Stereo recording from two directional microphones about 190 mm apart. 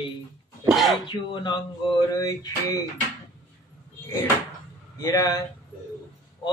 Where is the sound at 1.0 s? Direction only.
25° left (ahead or behind).